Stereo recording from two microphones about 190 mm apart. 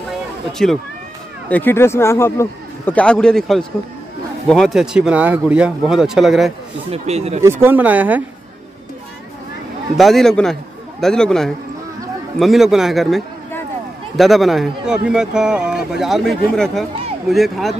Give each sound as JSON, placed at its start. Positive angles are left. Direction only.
{"t": 0.5, "sound": "a man's voice", "side_deg": 0}
{"t": 6.9, "sound": "speech", "side_deg": -35}
{"t": 7.4, "sound": "speech", "side_deg": -10}
{"t": 9.9, "sound": "a man's voice", "side_deg": 0}